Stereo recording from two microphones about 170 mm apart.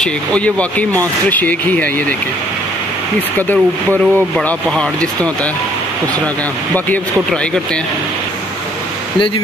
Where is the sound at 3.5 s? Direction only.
10° left (ahead or behind).